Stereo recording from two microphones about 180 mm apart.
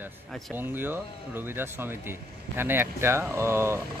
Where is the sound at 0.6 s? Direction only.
10° right (ahead or behind).